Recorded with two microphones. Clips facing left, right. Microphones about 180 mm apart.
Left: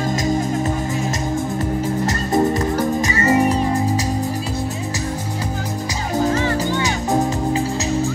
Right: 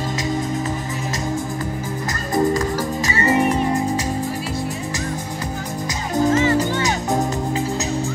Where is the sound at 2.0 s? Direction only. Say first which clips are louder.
Even; 25° left (ahead or behind).